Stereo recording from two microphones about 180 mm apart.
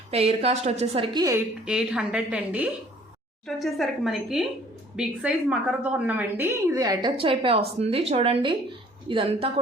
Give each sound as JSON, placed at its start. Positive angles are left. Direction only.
{"t": 0.1, "sound": "a woman's voice", "side_deg": -35}
{"t": 1.6, "sound": "a woman's voice", "side_deg": -5}